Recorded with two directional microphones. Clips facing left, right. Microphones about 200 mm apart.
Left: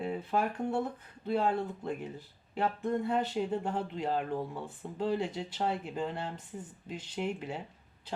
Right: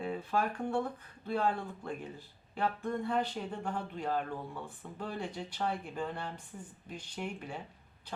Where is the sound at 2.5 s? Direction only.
20° left (ahead or behind).